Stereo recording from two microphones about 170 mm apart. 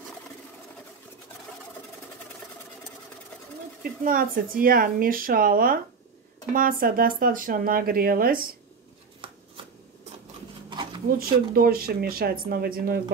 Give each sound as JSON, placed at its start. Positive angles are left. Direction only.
{"t": 4.0, "sound": "speech", "side_deg": -55}
{"t": 10.7, "sound": "a sound", "side_deg": -25}
{"t": 11.1, "sound": "speech", "side_deg": -60}